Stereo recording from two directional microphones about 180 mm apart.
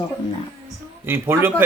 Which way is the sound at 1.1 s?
15° right (ahead or behind).